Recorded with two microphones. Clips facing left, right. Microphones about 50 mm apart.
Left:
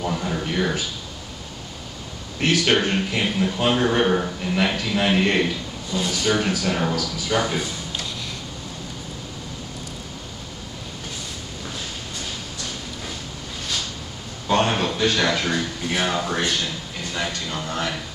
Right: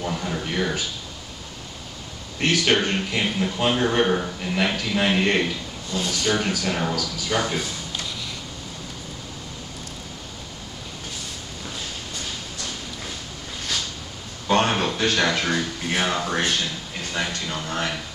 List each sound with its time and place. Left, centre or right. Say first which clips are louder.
0.0 s speech: left 2 dB; centre
2.4 s speech: left 1 dB; centre
6.0 s a man's voice: left 2 dB; centre
6.3 s a man's voice: left 2 dB; centre
14.5 s a sound: even; centre
15.1 s speech: even; centre
17.5 s speech: left 1 dB; centre